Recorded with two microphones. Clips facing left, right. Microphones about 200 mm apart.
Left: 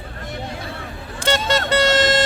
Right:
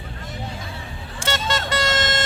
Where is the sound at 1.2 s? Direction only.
35° left (ahead or behind).